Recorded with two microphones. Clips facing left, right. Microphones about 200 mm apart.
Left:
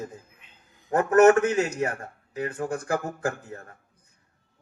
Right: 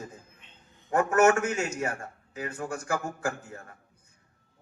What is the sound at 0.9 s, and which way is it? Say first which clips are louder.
Speech: left 5 dB; 35° left (ahead or behind).